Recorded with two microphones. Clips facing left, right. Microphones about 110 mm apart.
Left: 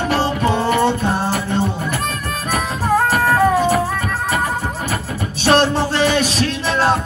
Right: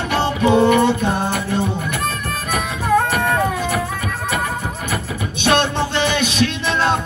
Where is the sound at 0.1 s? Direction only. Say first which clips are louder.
Right 4 dB; 35° left (ahead or behind).